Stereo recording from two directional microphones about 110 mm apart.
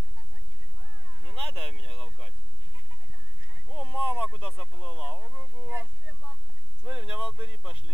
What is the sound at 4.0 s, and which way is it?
Speech, 15° right (ahead or behind).